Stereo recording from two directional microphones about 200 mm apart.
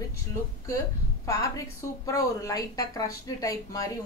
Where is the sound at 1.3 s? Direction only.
15° left (ahead or behind).